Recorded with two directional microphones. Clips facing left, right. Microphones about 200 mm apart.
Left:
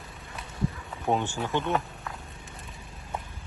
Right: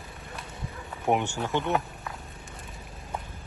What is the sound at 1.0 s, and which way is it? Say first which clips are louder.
Speech: right 1 dB; 15° right (ahead or behind).